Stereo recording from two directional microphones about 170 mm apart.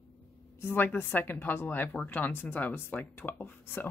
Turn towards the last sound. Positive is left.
turn(degrees=10)  # may be behind; listen again after turning